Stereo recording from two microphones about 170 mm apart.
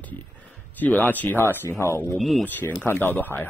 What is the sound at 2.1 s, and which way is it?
Speech, centre (ahead or behind).